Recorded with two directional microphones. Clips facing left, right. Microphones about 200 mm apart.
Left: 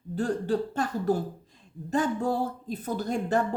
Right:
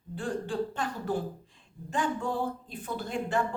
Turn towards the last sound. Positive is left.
turn(degrees=40)  # may be behind; listen again after turning